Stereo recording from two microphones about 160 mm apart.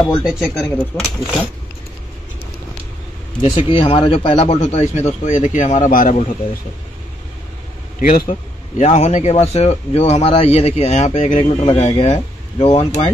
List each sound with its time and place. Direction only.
0.2 s speech: centre (ahead or behind)
3.5 s a man's voice: 30° left (ahead or behind)
5.2 s speech: 50° left (ahead or behind)
8.0 s a man's voice: 65° left (ahead or behind); by 13.1 s 45° left (ahead or behind)